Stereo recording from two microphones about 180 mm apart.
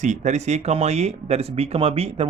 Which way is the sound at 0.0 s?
40° right (ahead or behind).